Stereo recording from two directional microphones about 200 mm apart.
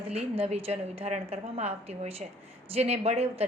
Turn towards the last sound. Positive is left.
turn(degrees=-30)  # may be behind; listen again after turning